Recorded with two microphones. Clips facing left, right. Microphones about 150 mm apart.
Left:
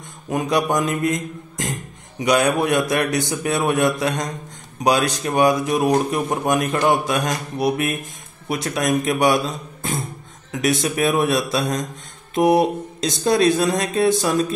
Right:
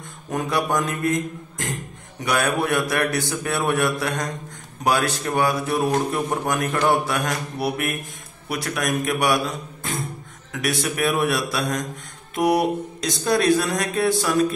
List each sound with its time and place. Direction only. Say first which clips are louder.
0.3 s speech: left 3 dB; 20° left (ahead or behind)
2.1 s speech: left 5 dB; 20° left (ahead or behind)
10.6 s speech: left 4 dB; 20° left (ahead or behind)